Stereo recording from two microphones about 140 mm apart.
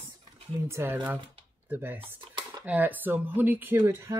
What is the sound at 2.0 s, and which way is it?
Dishes, 35° right (ahead or behind).